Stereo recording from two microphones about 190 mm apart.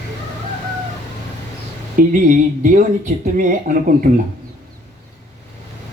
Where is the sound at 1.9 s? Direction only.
45° right (ahead or behind).